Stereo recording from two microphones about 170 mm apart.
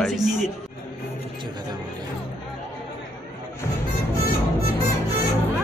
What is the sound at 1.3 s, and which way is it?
Speech, 25° right (ahead or behind).